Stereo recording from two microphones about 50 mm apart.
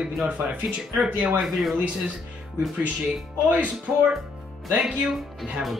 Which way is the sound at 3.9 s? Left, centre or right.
Centre.